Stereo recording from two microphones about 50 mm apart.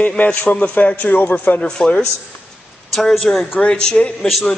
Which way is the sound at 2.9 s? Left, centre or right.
Centre.